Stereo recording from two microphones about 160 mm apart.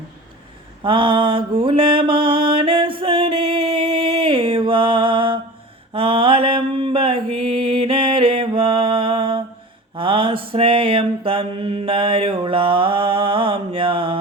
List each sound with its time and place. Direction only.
0.8 s mantra: 35° right (ahead or behind)